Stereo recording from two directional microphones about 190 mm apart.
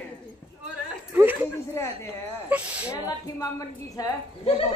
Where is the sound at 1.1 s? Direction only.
10° right (ahead or behind).